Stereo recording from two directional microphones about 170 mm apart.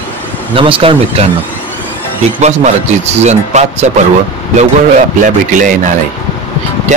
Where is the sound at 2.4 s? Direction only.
40° right (ahead or behind).